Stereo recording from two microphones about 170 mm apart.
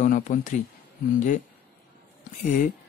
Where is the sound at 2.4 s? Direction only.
50° left (ahead or behind).